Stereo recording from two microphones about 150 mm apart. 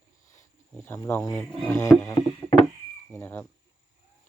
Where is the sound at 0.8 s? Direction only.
15° left (ahead or behind).